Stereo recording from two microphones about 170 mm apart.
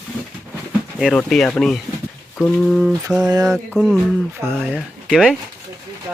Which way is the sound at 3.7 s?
Centre (ahead or behind).